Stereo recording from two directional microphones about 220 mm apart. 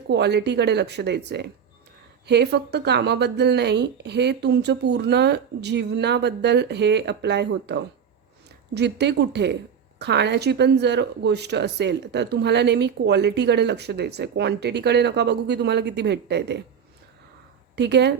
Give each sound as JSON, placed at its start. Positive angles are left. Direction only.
{"t": 0.1, "sound": "speech", "side_deg": -50}
{"t": 17.7, "sound": "speech", "side_deg": -50}